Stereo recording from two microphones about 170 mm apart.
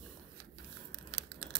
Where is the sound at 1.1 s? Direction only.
90° right.